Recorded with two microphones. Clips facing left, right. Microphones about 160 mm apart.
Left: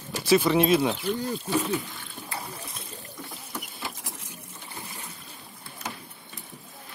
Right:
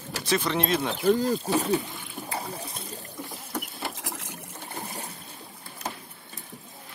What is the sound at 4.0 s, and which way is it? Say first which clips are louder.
Boat: right 5 dB; 90° right.